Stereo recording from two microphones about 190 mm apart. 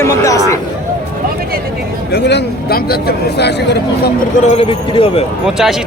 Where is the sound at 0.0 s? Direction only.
15° left (ahead or behind).